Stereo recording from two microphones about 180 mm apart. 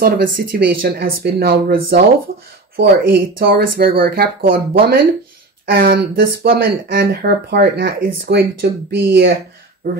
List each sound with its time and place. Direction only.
0.0 s speech: 55° right (ahead or behind)